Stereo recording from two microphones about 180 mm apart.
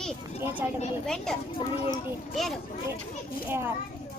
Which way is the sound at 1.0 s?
5° left (ahead or behind).